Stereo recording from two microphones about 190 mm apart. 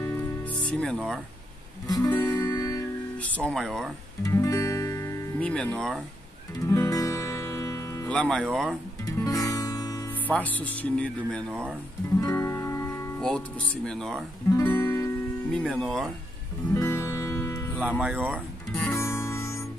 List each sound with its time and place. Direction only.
0.0 s music: 10° left (ahead or behind)
0.9 s speech: centre (ahead or behind)
1.9 s guitar: 15° left (ahead or behind)
4.2 s music: 15° left (ahead or behind)
5.5 s speech: 5° left (ahead or behind)
6.6 s music: 15° left (ahead or behind)
8.1 s speech: 5° left (ahead or behind)
9.0 s music: 20° left (ahead or behind)
12.2 s music: 20° left (ahead or behind)
13.8 s speech: centre (ahead or behind)
16.7 s music: 15° left (ahead or behind)
17.8 s speech: 5° right (ahead or behind)
18.3 s guitar: 5° left (ahead or behind)